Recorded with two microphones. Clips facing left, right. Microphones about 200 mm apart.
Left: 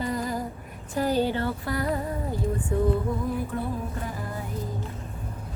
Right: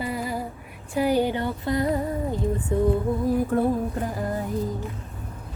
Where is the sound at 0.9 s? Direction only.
15° right (ahead or behind).